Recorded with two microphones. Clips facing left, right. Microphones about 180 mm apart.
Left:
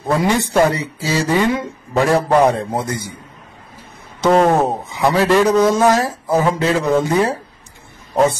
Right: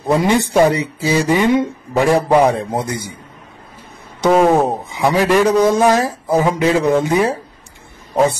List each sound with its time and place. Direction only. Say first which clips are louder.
0.0 s speech: right 2 dB; 20° right (ahead or behind)
4.2 s speech: right 1 dB; 5° right (ahead or behind)
4.6 s speech: even; 15° right (ahead or behind)